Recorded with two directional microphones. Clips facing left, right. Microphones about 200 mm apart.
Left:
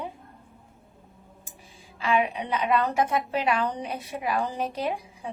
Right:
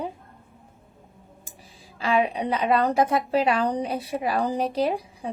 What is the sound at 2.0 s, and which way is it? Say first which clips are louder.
A woman's voice: right 2 dB; 35° right (ahead or behind).